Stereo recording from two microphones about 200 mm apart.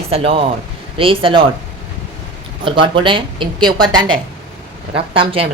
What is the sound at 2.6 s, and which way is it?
Speech, 25° right (ahead or behind).